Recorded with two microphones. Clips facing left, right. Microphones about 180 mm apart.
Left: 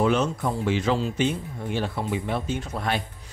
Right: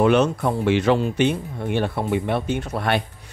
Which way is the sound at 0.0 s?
70° right (ahead or behind).